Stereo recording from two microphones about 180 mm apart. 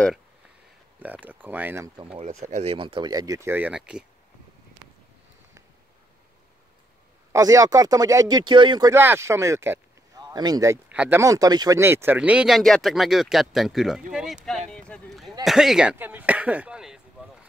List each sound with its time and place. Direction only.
0.9 s speech: 10° right (ahead or behind)
2.1 s speech: 40° right (ahead or behind); by 4.0 s 5° right (ahead or behind)
7.3 s speech: 20° right (ahead or behind)
10.9 s speech: 10° right (ahead or behind)